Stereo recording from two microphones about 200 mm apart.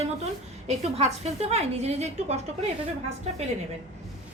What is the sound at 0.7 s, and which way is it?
A woman's voice, 30° right (ahead or behind).